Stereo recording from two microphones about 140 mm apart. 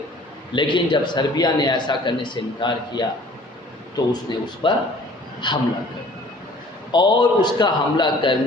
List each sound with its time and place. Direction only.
0.5 s a man's voice: 35° left (ahead or behind)
6.9 s a man's voice: 30° left (ahead or behind)